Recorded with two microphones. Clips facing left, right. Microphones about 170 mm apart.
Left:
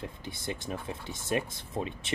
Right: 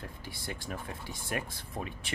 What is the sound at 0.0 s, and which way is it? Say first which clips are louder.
Speech: left 4 dB; 20° left (ahead or behind).